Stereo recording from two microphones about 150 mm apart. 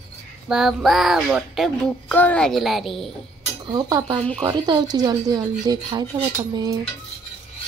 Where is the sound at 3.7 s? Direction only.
25° right (ahead or behind).